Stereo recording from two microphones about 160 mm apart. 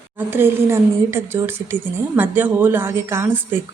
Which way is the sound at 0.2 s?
15° right (ahead or behind).